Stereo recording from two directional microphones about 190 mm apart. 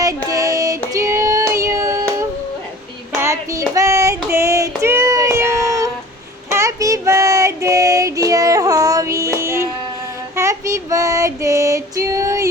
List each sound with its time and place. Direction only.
0.3 s music: 20° right (ahead or behind)
0.9 s child singing: 15° right (ahead or behind)